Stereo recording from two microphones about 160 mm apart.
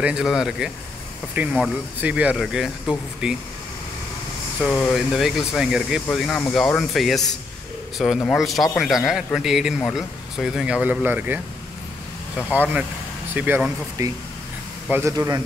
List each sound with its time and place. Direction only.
0.0 s speech: 5° right (ahead or behind)
4.6 s speech: 5° left (ahead or behind); by 11.4 s 10° right (ahead or behind)
12.5 s speech: 10° right (ahead or behind)
14.0 s speech: 20° right (ahead or behind)